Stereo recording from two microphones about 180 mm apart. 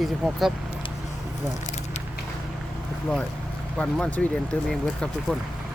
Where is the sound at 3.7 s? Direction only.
5° left (ahead or behind).